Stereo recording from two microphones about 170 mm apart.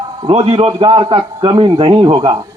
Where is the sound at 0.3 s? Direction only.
40° right (ahead or behind).